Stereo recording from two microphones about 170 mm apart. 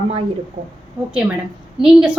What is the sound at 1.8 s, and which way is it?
Speech, 5° right (ahead or behind).